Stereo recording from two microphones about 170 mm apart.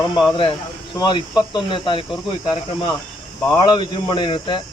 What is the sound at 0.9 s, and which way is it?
Speech, 30° left (ahead or behind).